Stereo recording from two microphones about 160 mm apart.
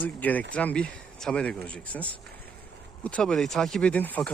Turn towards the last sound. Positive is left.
turn(degrees=10)  # may be behind; listen again after turning